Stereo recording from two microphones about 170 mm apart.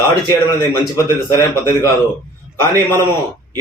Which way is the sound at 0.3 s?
15° left (ahead or behind).